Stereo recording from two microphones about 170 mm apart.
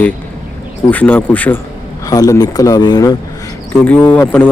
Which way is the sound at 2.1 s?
20° left (ahead or behind).